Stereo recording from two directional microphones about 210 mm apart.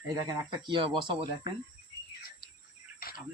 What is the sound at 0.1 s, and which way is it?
Speech, 20° right (ahead or behind).